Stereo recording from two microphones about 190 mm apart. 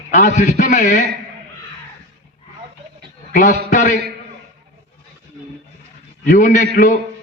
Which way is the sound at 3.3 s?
45° left (ahead or behind).